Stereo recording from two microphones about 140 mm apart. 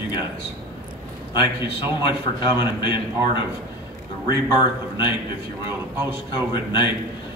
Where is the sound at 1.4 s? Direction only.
35° left (ahead or behind).